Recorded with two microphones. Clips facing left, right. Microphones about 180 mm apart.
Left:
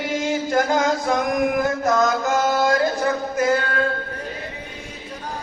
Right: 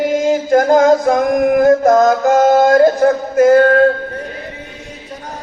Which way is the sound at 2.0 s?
60° right (ahead or behind).